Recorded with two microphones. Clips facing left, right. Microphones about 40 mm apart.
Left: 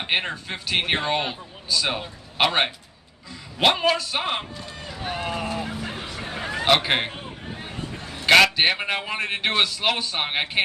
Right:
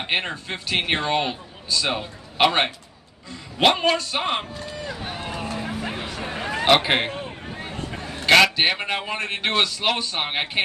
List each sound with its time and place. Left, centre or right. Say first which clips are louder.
0.0 s speech: even; centre
5.0 s run: left 7 dB; centre
5.7 s a sound: right 3 dB; right
6.6 s a man's voice: right 2 dB; centre
7.9 s a sound: right 3 dB; right
8.5 s speech: even; centre